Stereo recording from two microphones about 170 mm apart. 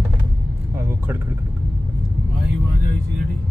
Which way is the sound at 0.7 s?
15° right (ahead or behind).